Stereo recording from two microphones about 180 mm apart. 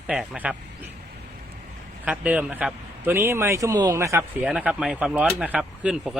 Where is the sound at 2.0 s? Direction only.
5° right (ahead or behind).